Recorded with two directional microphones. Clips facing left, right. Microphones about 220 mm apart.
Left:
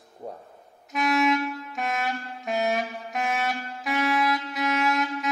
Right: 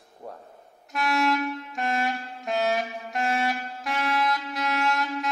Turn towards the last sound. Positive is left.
turn(degrees=0)  # may be behind; listen again after turning